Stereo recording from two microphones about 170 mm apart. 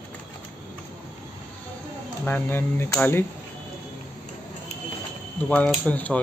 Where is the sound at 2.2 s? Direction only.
10° left (ahead or behind).